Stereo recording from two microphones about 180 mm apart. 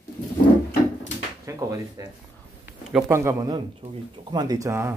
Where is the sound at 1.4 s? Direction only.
15° right (ahead or behind).